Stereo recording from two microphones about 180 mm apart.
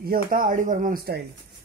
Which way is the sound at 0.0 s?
55° right (ahead or behind).